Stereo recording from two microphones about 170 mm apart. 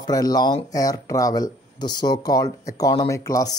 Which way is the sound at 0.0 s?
20° left (ahead or behind).